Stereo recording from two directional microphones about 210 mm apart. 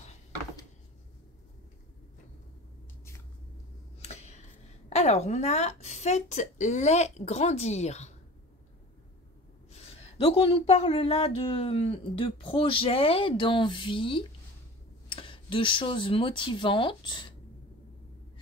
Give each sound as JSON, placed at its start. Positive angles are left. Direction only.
{"t": 4.0, "sound": "speech", "side_deg": 30}
{"t": 10.1, "sound": "speech", "side_deg": 25}